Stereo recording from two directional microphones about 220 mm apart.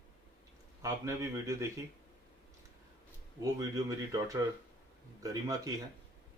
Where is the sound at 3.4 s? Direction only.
15° right (ahead or behind).